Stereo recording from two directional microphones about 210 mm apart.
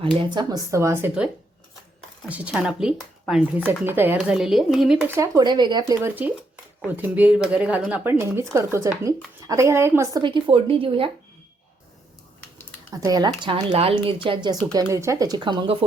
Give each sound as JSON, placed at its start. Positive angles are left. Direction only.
{"t": 0.0, "sound": "speech", "side_deg": -25}
{"t": 2.3, "sound": "a woman's voice", "side_deg": -5}
{"t": 12.9, "sound": "a woman's voice", "side_deg": -15}